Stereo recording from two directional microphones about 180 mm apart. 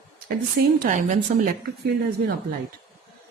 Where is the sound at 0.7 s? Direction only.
50° right (ahead or behind).